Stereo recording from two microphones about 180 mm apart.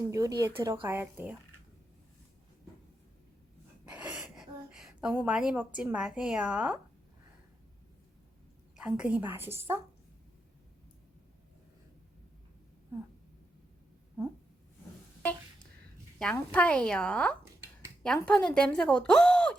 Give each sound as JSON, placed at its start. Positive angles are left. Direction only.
{"t": 0.1, "sound": "speech", "side_deg": -20}
{"t": 3.8, "sound": "a woman's voice", "side_deg": -5}
{"t": 8.7, "sound": "speech", "side_deg": -5}
{"t": 14.2, "sound": "a sound", "side_deg": -20}
{"t": 16.3, "sound": "a woman's voice", "side_deg": 10}